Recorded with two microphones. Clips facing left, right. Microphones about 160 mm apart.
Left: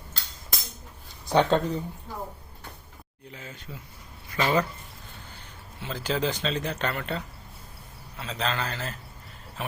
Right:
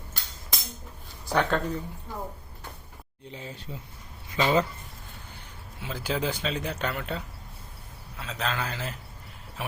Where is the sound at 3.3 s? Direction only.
30° right (ahead or behind).